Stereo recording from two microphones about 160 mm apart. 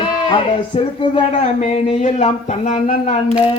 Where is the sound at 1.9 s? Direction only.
40° left (ahead or behind).